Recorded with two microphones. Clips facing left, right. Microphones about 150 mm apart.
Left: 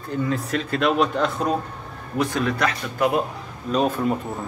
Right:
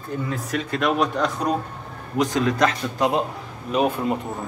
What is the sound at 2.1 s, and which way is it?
A man's voice, 20° right (ahead or behind).